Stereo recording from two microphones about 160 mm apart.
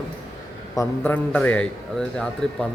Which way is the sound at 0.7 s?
10° left (ahead or behind).